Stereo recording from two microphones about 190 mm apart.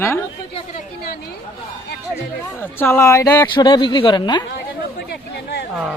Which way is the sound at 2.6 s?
10° left (ahead or behind).